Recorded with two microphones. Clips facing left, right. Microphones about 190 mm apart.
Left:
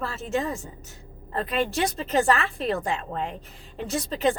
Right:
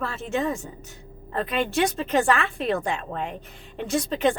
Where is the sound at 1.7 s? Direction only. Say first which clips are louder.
Right 4 dB; 35° left (ahead or behind).